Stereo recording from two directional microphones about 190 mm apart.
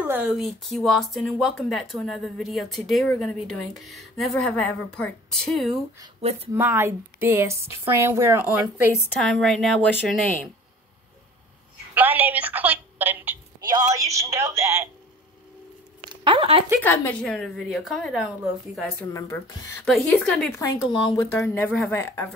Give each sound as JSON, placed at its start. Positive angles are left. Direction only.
{"t": 0.0, "sound": "speech", "side_deg": -5}
{"t": 6.5, "sound": "speech", "side_deg": -10}
{"t": 9.2, "sound": "speech", "side_deg": 0}
{"t": 11.9, "sound": "a woman's voice", "side_deg": -10}
{"t": 13.6, "sound": "speech", "side_deg": -20}
{"t": 16.0, "sound": "a sound", "side_deg": -25}
{"t": 16.8, "sound": "speech", "side_deg": 10}
{"t": 18.9, "sound": "speech", "side_deg": 15}
{"t": 20.9, "sound": "speech", "side_deg": 25}
{"t": 21.3, "sound": "speech", "side_deg": 10}